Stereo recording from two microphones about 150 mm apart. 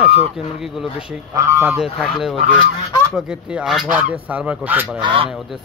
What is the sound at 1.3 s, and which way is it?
Speech, 20° right (ahead or behind).